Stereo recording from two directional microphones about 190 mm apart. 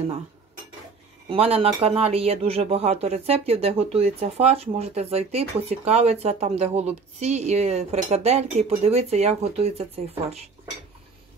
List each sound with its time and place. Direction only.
1.3 s speech: 30° right (ahead or behind)